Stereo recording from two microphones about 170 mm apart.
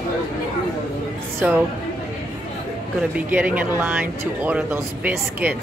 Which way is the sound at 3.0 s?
10° right (ahead or behind).